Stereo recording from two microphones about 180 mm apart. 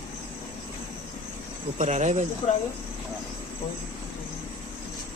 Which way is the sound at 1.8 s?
40° right (ahead or behind).